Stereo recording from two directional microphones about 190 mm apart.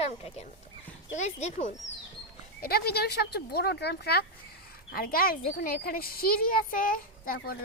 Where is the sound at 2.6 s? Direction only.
55° left (ahead or behind).